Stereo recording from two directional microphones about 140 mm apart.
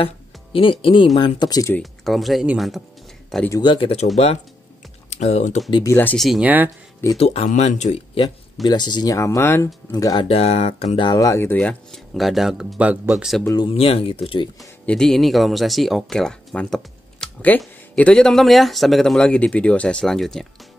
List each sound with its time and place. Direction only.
0.0 s speech: 40° left (ahead or behind)
1.8 s speech: centre (ahead or behind)
3.6 s speech: 35° left (ahead or behind)
5.1 s speech: 55° left (ahead or behind)
5.9 s speech: 15° left (ahead or behind)
6.1 s speech: centre (ahead or behind)
6.4 s speech: 10° right (ahead or behind)
7.2 s speech: 50° left (ahead or behind)
8.6 s speech: 30° left (ahead or behind)
10.2 s speech: 45° left (ahead or behind)
11.1 s speech: 25° left (ahead or behind)
11.6 s speech: 5° left (ahead or behind)
13.6 s speech: 40° left (ahead or behind)
14.6 s speech: 5° left (ahead or behind)